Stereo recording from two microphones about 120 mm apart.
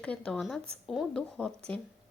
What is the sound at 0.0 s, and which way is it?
Speech, 10° left (ahead or behind).